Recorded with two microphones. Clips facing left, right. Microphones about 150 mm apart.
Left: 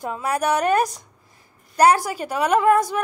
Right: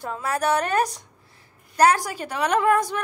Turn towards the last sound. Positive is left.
turn(degrees=10)  # may be behind; listen again after turning